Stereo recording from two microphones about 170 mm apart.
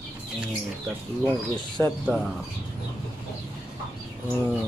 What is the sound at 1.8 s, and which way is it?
Speech, 10° left (ahead or behind).